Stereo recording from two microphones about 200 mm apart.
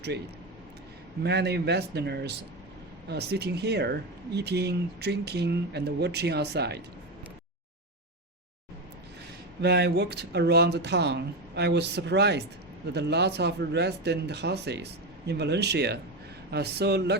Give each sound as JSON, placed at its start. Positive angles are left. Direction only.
{"t": 1.2, "sound": "speech", "side_deg": -55}
{"t": 9.6, "sound": "speech", "side_deg": -55}